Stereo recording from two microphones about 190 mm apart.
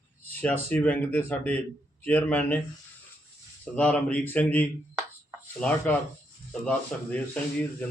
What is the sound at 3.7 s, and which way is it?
Speech, 5° left (ahead or behind).